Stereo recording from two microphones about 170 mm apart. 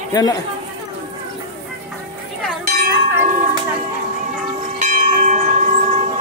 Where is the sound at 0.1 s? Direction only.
20° left (ahead or behind).